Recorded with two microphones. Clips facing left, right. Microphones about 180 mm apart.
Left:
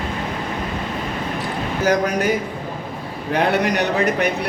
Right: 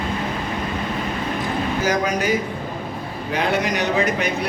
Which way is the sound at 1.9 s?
60° left (ahead or behind).